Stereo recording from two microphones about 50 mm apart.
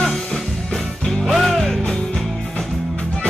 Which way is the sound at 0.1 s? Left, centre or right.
Centre.